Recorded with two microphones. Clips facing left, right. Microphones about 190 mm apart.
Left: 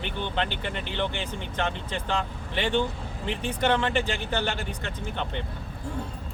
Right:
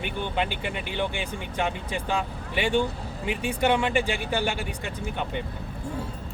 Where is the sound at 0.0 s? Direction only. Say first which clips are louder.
Right 1 dB; 10° right (ahead or behind).